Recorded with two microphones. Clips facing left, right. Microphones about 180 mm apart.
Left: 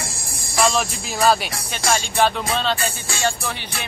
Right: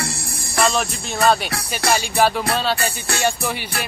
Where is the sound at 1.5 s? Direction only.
65° right (ahead or behind).